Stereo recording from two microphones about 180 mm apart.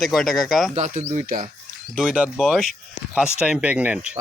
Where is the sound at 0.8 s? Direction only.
40° right (ahead or behind).